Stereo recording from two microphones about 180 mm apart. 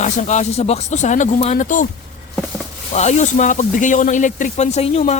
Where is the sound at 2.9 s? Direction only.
40° left (ahead or behind).